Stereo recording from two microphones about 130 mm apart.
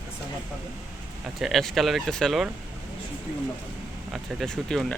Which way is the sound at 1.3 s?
Centre (ahead or behind).